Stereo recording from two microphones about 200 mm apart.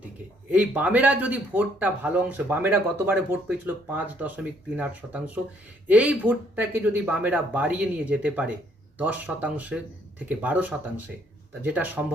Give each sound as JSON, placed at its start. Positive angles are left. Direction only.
{"t": 0.5, "sound": "speech", "side_deg": -5}